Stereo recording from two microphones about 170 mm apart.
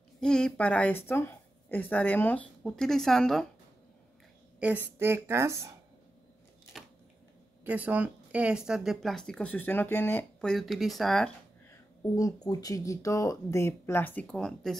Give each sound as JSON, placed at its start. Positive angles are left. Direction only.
{"t": 0.2, "sound": "speech", "side_deg": 5}
{"t": 4.6, "sound": "a woman's voice", "side_deg": -10}
{"t": 7.6, "sound": "speech", "side_deg": -10}
{"t": 12.2, "sound": "speech", "side_deg": 20}